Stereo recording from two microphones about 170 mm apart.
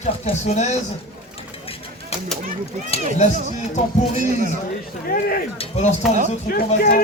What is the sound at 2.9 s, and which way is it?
Speech, 40° left (ahead or behind).